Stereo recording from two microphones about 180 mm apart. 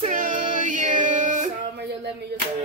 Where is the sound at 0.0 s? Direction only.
45° right (ahead or behind).